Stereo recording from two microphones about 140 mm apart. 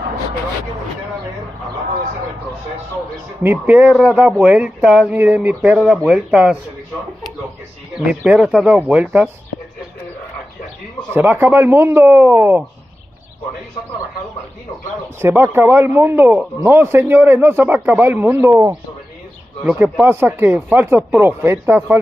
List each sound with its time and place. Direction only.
3.4 s a man's voice: 10° right (ahead or behind)
8.1 s a man's voice: 5° right (ahead or behind)
11.1 s a man's voice: 15° right (ahead or behind)
15.1 s a man's voice: 15° right (ahead or behind)